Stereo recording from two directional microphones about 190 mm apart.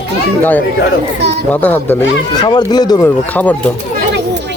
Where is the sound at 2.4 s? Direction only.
20° left (ahead or behind).